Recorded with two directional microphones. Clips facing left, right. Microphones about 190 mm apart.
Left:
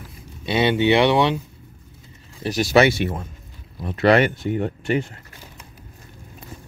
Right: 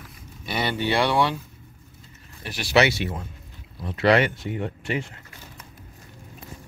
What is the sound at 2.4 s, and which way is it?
Speech, 40° left (ahead or behind).